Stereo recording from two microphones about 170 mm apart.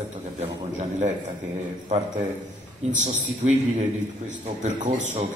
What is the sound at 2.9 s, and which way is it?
A man's voice, 45° right (ahead or behind).